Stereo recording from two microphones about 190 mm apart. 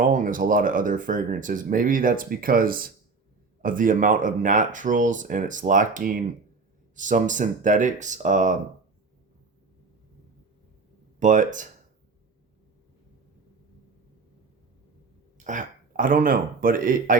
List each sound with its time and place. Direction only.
0.0 s speech: 45° right (ahead or behind)
11.2 s speech: 45° right (ahead or behind)
15.4 s speech: 45° right (ahead or behind)